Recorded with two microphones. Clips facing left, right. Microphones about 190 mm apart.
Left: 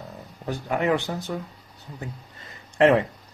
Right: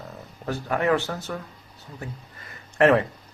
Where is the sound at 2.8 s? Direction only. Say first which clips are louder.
Even; 15° left (ahead or behind).